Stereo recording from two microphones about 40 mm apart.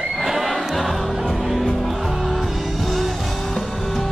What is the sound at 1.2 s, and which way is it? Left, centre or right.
Music, centre.